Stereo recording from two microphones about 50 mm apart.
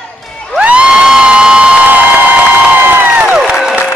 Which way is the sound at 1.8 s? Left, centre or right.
Right.